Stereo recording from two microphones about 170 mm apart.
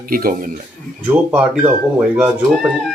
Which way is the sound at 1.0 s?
10° right (ahead or behind).